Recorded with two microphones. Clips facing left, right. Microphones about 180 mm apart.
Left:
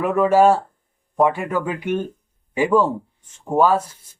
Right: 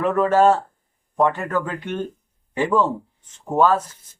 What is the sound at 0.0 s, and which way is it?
Speech, 10° left (ahead or behind).